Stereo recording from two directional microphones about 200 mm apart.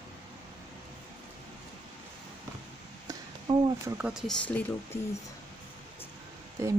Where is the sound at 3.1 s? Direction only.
20° right (ahead or behind).